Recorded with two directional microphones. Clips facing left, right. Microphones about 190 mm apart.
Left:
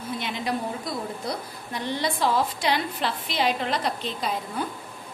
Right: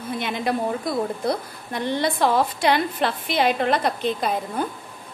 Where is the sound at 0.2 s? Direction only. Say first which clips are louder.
Right 6 dB; 55° right (ahead or behind).